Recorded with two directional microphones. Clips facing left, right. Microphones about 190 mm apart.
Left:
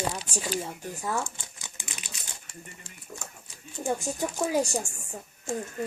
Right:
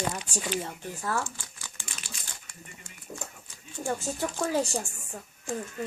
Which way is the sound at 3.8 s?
15° left (ahead or behind).